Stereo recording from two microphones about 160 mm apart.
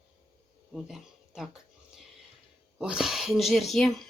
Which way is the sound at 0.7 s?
Centre (ahead or behind).